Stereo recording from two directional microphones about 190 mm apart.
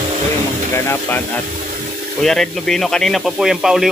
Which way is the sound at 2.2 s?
Centre (ahead or behind).